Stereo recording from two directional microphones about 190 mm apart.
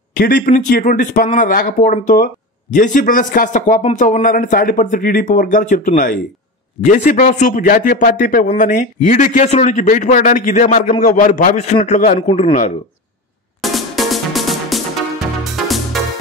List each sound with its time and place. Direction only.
0.1 s a man's voice: 50° left (ahead or behind)
13.6 s music: centre (ahead or behind)